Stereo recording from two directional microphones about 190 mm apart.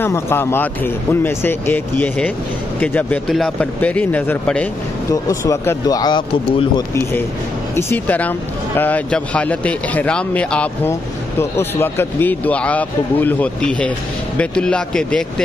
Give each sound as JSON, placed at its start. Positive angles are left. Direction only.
{"t": 0.0, "sound": "speech", "side_deg": 10}